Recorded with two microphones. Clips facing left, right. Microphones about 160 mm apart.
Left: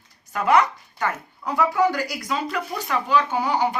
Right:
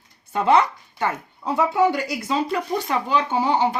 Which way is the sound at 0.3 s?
30° right (ahead or behind).